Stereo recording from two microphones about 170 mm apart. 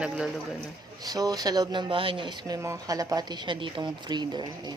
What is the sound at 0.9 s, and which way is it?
Speech, 20° right (ahead or behind).